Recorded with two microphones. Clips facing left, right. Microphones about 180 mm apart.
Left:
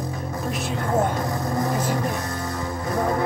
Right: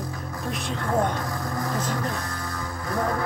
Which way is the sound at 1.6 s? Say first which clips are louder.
Left 3 dB; 20° left (ahead or behind).